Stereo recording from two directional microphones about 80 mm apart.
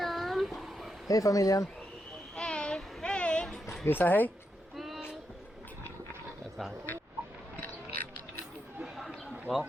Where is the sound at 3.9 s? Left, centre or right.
Left.